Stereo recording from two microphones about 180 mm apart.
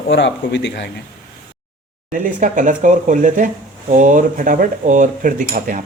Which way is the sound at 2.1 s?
45° right (ahead or behind).